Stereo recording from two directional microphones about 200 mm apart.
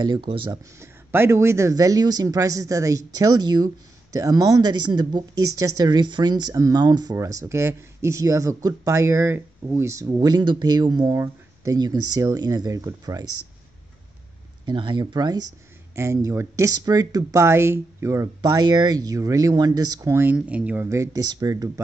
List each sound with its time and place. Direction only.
0.3 s speech: 15° right (ahead or behind)
14.7 s speech: 25° right (ahead or behind)